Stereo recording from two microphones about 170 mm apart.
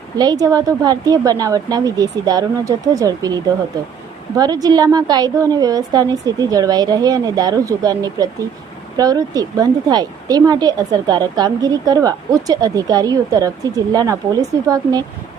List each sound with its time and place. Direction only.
0.2 s a woman's voice: 20° right (ahead or behind)